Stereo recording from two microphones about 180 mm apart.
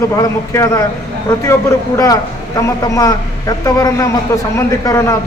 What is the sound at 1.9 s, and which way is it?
A man's voice, 15° left (ahead or behind).